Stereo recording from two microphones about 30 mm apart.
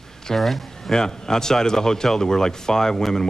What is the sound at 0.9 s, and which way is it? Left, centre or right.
Speech, left.